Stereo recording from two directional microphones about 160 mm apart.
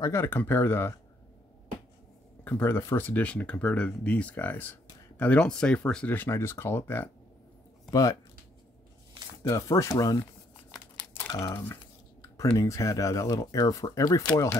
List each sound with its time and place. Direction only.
0.0 s speech: 20° left (ahead or behind)
2.4 s speech: 10° left (ahead or behind)
9.4 s speech: 20° left (ahead or behind)